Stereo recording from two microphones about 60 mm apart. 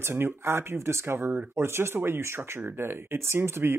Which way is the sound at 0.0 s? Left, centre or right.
Right.